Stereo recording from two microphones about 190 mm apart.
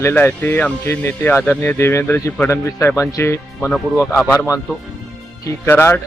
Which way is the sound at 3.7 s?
5° right (ahead or behind).